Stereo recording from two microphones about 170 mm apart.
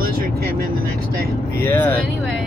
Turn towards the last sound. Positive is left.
turn(degrees=10)  # may be behind; listen again after turning